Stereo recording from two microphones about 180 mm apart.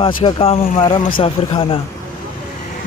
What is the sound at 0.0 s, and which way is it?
A man's voice, 30° left (ahead or behind).